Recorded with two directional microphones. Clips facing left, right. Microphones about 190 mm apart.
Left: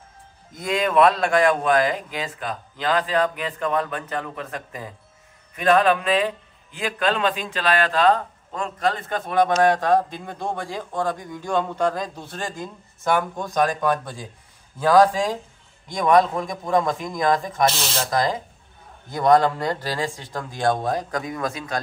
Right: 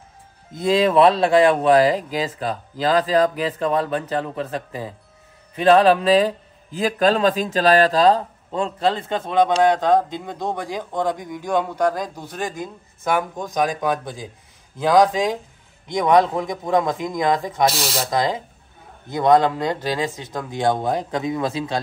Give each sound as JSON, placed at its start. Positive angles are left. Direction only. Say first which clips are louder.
{"t": 0.6, "sound": "speech", "louder": "right 3 dB", "side_deg": -30}